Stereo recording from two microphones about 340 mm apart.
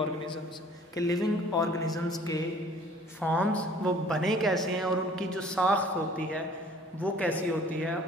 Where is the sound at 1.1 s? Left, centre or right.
Centre.